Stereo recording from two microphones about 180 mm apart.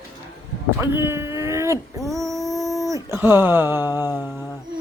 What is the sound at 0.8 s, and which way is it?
Speech, 15° right (ahead or behind).